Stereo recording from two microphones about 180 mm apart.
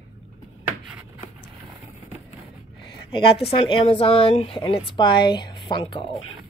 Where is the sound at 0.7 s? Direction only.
10° right (ahead or behind).